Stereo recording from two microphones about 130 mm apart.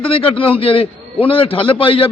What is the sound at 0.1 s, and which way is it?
A man's voice, 45° left (ahead or behind).